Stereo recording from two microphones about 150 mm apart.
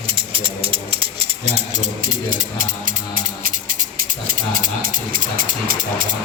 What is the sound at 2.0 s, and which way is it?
Speech, 65° right (ahead or behind).